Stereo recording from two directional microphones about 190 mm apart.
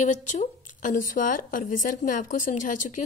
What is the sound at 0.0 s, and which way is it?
Speech, 40° left (ahead or behind).